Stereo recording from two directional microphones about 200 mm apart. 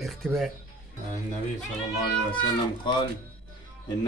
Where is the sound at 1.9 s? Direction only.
25° left (ahead or behind).